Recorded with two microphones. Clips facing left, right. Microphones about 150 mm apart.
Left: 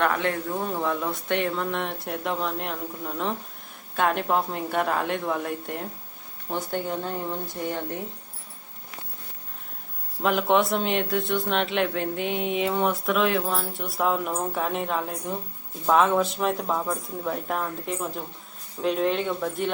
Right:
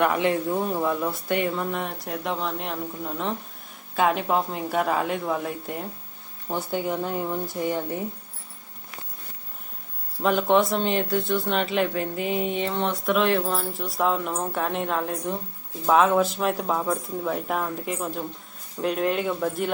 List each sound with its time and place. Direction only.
0.0 s speech: 15° right (ahead or behind)
10.2 s speech: centre (ahead or behind)